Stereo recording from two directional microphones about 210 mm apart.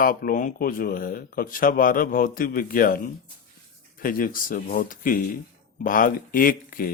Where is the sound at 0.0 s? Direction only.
40° left (ahead or behind).